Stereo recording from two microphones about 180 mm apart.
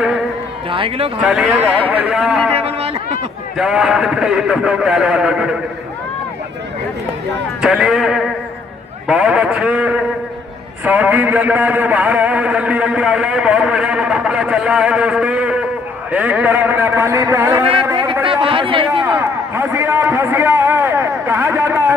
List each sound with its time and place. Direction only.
0.7 s speech: 30° right (ahead or behind)
1.2 s a man's voice: centre (ahead or behind)
2.5 s speech: 35° right (ahead or behind)
3.5 s a man's voice: 5° right (ahead or behind)
7.6 s a man's voice: 5° right (ahead or behind)
17.8 s a sound: 25° right (ahead or behind)
18.2 s speech: 30° right (ahead or behind)
19.0 s a sound: 10° right (ahead or behind)